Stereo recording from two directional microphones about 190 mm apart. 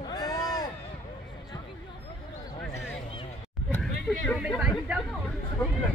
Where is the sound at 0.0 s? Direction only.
20° left (ahead or behind).